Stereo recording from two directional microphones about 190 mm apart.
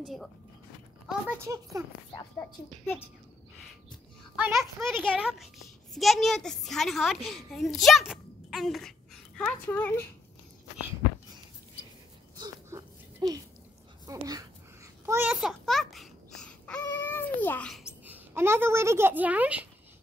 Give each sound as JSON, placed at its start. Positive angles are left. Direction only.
{"t": 0.0, "sound": "a child's voice", "side_deg": 0}
{"t": 1.4, "sound": "a child's voice", "side_deg": -15}
{"t": 2.3, "sound": "a woman's voice", "side_deg": 10}
{"t": 4.4, "sound": "a child's voice", "side_deg": -5}
{"t": 12.4, "sound": "a sound", "side_deg": -20}
{"t": 14.0, "sound": "speech", "side_deg": -20}
{"t": 15.0, "sound": "babbling", "side_deg": -10}
{"t": 18.0, "sound": "a woman's voice", "side_deg": -10}